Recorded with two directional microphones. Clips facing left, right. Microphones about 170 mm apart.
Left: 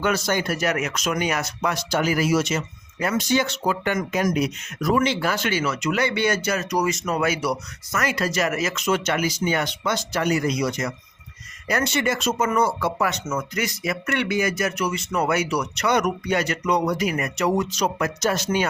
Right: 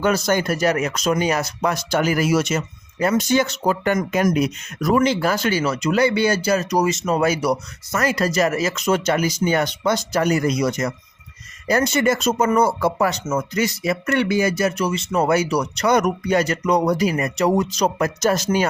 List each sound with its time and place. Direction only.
0.0 s speech: 40° right (ahead or behind)
1.9 s speech: 50° right (ahead or behind)